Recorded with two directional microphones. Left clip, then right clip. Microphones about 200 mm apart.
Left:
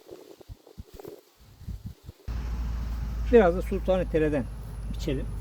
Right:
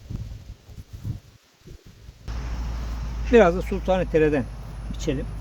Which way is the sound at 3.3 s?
25° right (ahead or behind).